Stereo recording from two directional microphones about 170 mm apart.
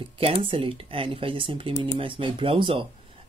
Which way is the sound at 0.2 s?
35° right (ahead or behind).